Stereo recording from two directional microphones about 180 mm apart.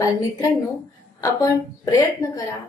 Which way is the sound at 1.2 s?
20° left (ahead or behind).